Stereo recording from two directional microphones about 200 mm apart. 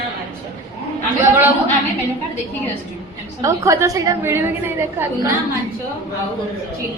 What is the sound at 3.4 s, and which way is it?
A woman's voice, 15° right (ahead or behind).